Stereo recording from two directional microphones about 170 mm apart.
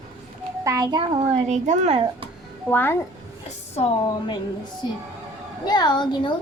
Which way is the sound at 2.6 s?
10° left (ahead or behind).